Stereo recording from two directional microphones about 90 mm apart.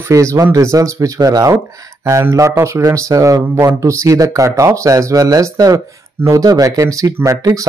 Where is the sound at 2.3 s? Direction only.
35° right (ahead or behind).